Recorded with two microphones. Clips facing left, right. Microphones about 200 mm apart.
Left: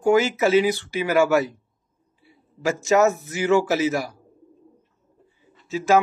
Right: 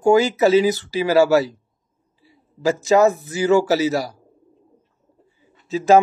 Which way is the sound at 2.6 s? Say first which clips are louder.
Right 3 dB; 35° right (ahead or behind).